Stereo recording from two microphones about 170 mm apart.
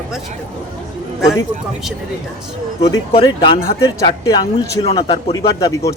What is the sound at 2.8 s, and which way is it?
A man's voice, 35° left (ahead or behind).